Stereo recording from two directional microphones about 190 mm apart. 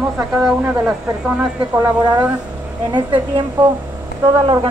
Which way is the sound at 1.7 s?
20° right (ahead or behind).